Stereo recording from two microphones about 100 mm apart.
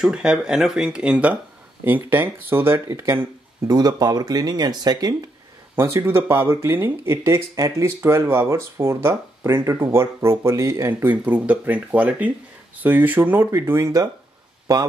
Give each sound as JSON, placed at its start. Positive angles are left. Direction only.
{"t": 0.0, "sound": "speech", "side_deg": -10}
{"t": 3.6, "sound": "speech", "side_deg": -40}
{"t": 5.8, "sound": "speech", "side_deg": -25}